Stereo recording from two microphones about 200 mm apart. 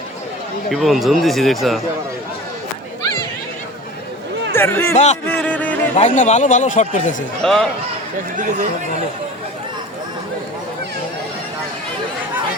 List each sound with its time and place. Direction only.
0.7 s speech: centre (ahead or behind)
4.5 s speech: 10° left (ahead or behind)
6.0 s speech: 35° left (ahead or behind)
7.4 s speech: centre (ahead or behind)
8.4 s speech: 40° right (ahead or behind)